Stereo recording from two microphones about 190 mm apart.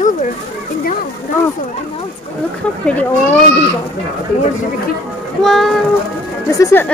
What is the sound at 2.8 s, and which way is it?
Speech, 5° left (ahead or behind).